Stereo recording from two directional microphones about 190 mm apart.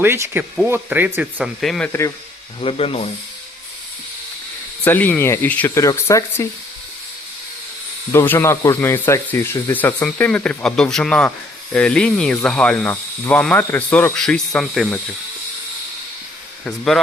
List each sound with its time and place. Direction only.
0.0 s speech: 10° right (ahead or behind)
1.9 s speech: 15° left (ahead or behind)
2.6 s speech: 30° left (ahead or behind)
4.8 s speech: 10° left (ahead or behind)
8.1 s speech: 10° left (ahead or behind)
16.6 s speech: centre (ahead or behind)